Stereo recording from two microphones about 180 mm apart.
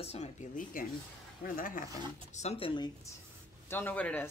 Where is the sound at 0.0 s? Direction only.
35° left (ahead or behind).